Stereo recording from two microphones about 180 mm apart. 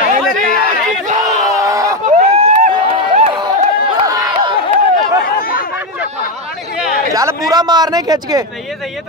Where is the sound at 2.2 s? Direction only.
35° right (ahead or behind).